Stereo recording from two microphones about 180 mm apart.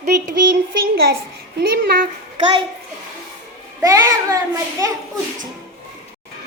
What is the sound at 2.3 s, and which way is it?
Speech, 25° right (ahead or behind).